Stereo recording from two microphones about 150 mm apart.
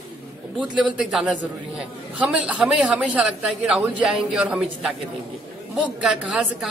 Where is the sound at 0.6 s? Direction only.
5° right (ahead or behind).